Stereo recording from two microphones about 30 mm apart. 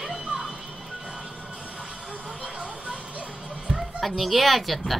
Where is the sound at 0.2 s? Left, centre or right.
Right.